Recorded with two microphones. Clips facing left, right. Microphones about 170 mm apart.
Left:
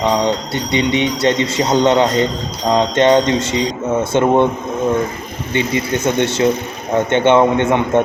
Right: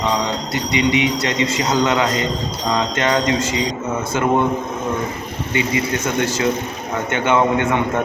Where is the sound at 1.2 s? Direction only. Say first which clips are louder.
Left 4 dB; 30° left (ahead or behind).